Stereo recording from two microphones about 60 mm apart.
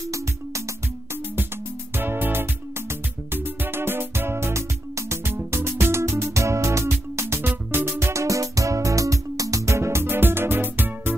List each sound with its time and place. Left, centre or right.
2.0 s music: right